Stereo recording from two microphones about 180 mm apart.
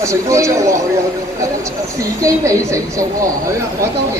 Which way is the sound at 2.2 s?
20° right (ahead or behind).